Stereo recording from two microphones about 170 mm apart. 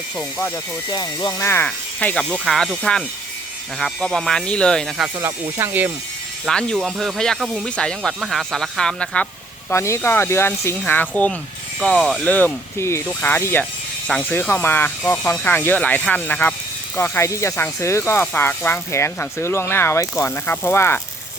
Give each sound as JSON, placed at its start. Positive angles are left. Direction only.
{"t": 0.2, "sound": "speech", "side_deg": 10}
{"t": 0.9, "sound": "speech", "side_deg": 25}
{"t": 5.2, "sound": "speech", "side_deg": -15}
{"t": 6.4, "sound": "speech", "side_deg": 5}
{"t": 9.6, "sound": "speech", "side_deg": 15}